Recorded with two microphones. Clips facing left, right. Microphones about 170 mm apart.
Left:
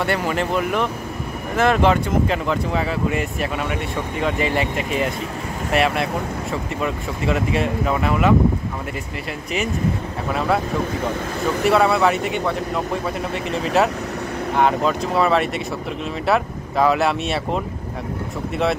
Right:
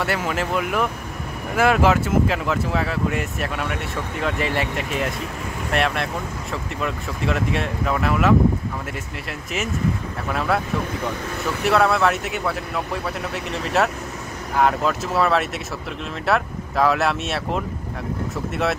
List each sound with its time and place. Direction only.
0.0 s speech: centre (ahead or behind)
9.5 s speech: centre (ahead or behind)
11.6 s speech: centre (ahead or behind)